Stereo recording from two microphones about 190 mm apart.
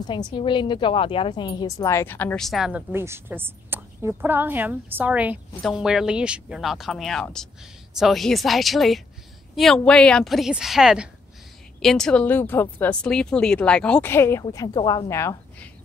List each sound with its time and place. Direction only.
0.0 s a woman's voice: 25° left (ahead or behind)